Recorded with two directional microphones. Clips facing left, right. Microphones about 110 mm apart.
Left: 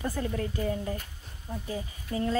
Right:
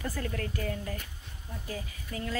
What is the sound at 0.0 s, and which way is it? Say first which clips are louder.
A woman's voice: left 4 dB; 15° left (ahead or behind).